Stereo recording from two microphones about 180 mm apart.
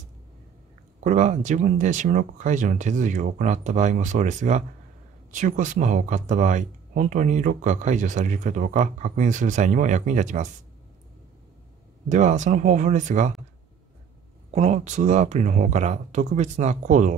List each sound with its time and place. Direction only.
1.0 s speech: 45° right (ahead or behind)
12.1 s speech: 40° right (ahead or behind)
14.5 s speech: 40° right (ahead or behind)